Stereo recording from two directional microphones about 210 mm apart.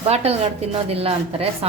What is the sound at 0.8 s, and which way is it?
Speech, 30° right (ahead or behind).